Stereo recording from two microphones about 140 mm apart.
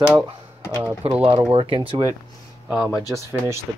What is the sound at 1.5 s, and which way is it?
Speech, 40° right (ahead or behind).